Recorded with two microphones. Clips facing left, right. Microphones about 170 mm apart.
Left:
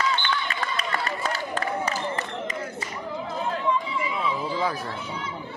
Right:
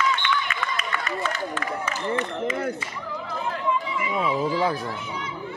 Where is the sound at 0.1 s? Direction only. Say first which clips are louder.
Right 1 dB; 35° left (ahead or behind).